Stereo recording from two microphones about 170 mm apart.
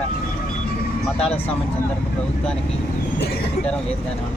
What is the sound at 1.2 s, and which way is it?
Speech, 35° left (ahead or behind).